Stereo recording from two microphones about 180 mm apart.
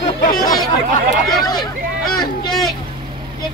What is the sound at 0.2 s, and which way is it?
Speech, 50° left (ahead or behind).